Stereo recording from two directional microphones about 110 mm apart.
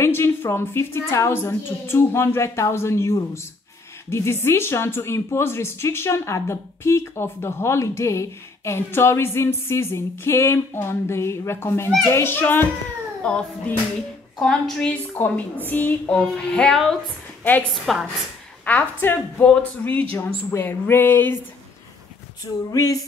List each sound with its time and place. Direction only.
0.0 s a woman's voice: 20° left (ahead or behind)
13.2 s speech: 10° left (ahead or behind)
17.4 s a woman's voice: 15° left (ahead or behind)
17.9 s a woman's voice: centre (ahead or behind)
18.7 s a woman's voice: 15° left (ahead or behind)
22.7 s male singing: 35° left (ahead or behind)